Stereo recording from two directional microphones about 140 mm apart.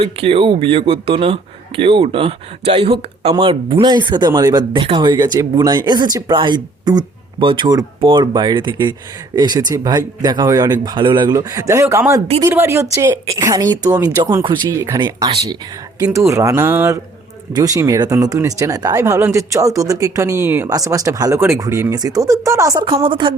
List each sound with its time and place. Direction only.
0.0 s speech: 40° right (ahead or behind); by 22.9 s 25° right (ahead or behind)
23.0 s speech: 35° right (ahead or behind)